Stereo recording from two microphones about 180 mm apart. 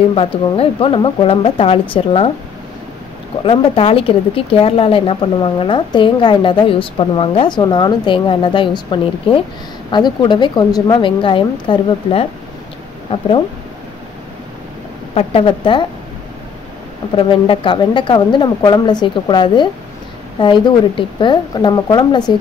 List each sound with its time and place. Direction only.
0.1 s speech: 30° left (ahead or behind)
3.4 s speech: 30° left (ahead or behind)
15.1 s speech: 30° left (ahead or behind)
17.1 s speech: 30° left (ahead or behind)